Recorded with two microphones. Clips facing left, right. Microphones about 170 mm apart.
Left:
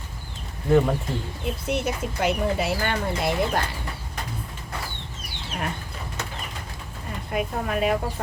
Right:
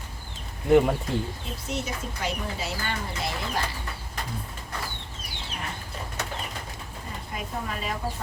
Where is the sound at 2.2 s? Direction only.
60° left (ahead or behind).